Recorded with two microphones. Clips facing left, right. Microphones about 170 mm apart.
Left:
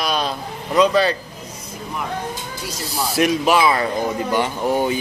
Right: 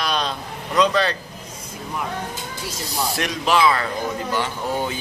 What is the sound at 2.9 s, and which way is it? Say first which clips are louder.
Speech: left 7 dB; 10° left (ahead or behind).